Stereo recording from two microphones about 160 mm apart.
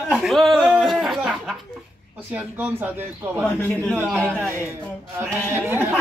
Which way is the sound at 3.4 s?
10° left (ahead or behind).